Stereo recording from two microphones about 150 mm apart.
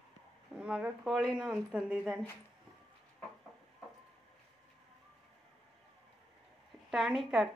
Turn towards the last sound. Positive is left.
turn(degrees=-5)  # may be behind; listen again after turning